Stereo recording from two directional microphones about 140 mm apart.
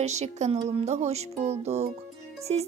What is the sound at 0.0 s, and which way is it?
Speech, 55° right (ahead or behind).